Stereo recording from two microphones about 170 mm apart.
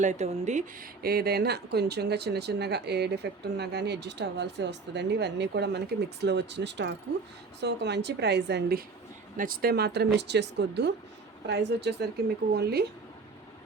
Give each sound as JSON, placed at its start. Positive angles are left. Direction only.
{"t": 0.0, "sound": "speech", "side_deg": -45}
{"t": 1.0, "sound": "speech", "side_deg": -65}
{"t": 9.4, "sound": "speech", "side_deg": -60}